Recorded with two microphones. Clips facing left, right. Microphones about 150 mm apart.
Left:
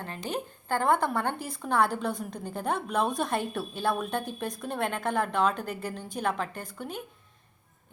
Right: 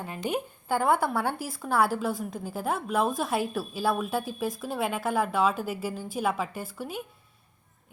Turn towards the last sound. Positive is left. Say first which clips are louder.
# right 2 dB
turn(degrees=-5)  # may be behind; listen again after turning